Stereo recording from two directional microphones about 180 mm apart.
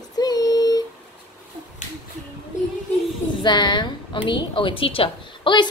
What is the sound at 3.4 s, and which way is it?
A woman's voice, 25° left (ahead or behind).